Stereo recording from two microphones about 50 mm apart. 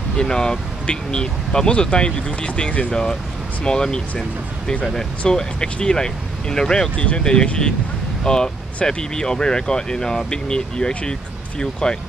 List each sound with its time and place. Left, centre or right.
0.2 s speech: centre
2.9 s speech: centre
5.3 s speech: centre